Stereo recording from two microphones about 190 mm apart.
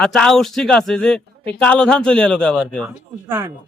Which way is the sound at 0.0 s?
5° left (ahead or behind).